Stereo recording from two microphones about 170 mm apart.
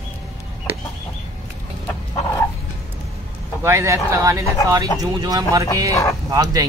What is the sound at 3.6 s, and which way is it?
Speech, 15° right (ahead or behind).